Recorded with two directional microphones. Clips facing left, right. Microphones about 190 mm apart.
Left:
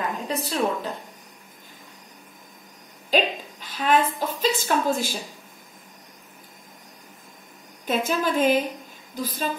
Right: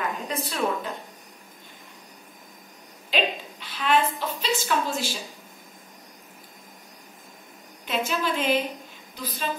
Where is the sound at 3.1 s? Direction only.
40° left (ahead or behind).